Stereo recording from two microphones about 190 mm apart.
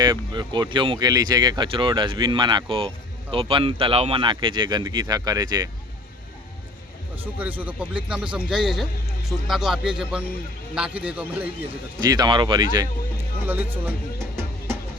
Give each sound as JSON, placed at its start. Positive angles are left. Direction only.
{"t": 0.0, "sound": "speech", "side_deg": -20}
{"t": 7.3, "sound": "a man's voice", "side_deg": -10}
{"t": 11.9, "sound": "speech", "side_deg": -20}
{"t": 13.5, "sound": "speech", "side_deg": -10}